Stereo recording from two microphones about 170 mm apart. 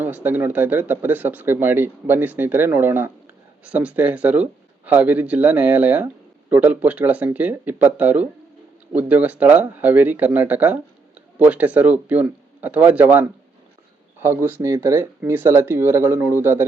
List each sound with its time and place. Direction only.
0.0 s speech: 10° right (ahead or behind)